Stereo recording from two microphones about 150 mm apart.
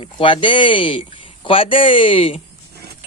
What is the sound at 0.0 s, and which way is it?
Speech, 35° left (ahead or behind).